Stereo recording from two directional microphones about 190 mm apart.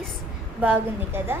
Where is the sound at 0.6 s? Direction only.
10° right (ahead or behind).